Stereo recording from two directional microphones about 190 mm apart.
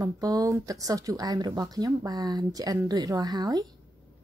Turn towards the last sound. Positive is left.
turn(degrees=-20)  # may be behind; listen again after turning